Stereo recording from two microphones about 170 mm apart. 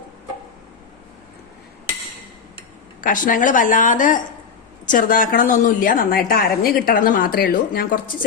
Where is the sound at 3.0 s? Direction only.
50° left (ahead or behind).